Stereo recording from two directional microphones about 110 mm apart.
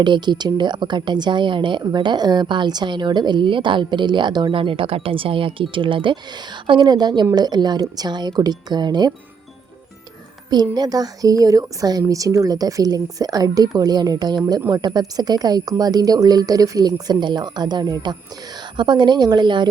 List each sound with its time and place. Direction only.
0.0 s a woman's voice: 45° right (ahead or behind)
10.5 s a woman's voice: 40° right (ahead or behind)